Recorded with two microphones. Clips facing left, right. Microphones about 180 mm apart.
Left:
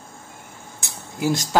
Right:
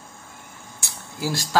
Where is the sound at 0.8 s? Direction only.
20° left (ahead or behind).